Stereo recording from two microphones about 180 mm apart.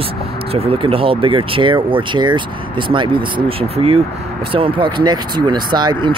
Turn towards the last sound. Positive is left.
turn(degrees=-25)  # may be behind; listen again after turning